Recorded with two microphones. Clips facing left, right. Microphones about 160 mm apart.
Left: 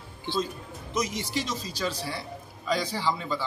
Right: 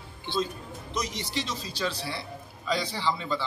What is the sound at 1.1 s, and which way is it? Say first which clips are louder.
Speech: left 2 dB; 45° left (ahead or behind).